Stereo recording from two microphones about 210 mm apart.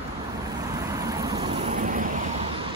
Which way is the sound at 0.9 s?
15° right (ahead or behind).